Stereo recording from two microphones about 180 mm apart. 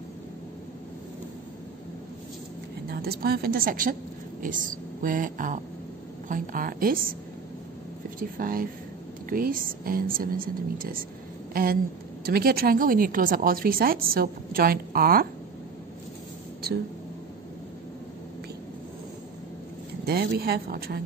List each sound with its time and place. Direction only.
2.9 s a woman's voice: 60° right (ahead or behind)
8.2 s a woman's voice: 55° right (ahead or behind)
20.1 s a woman's voice: 60° right (ahead or behind)